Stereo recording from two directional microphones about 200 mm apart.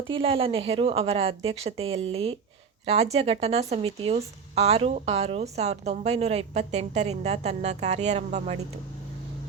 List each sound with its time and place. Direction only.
0.1 s a woman's voice: 25° right (ahead or behind)